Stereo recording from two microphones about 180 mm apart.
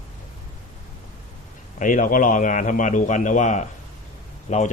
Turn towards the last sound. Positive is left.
turn(degrees=40)  # may be behind; listen again after turning